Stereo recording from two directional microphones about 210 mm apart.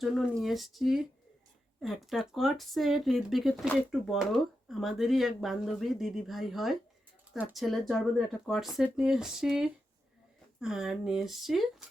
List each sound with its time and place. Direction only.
0.0 s speech: centre (ahead or behind)